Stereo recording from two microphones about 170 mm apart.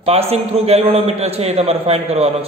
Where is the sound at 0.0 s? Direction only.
35° right (ahead or behind).